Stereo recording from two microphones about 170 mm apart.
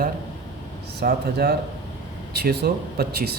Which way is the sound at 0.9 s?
65° right (ahead or behind).